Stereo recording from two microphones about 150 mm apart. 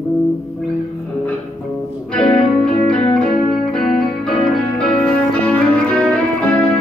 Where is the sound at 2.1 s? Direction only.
5° left (ahead or behind).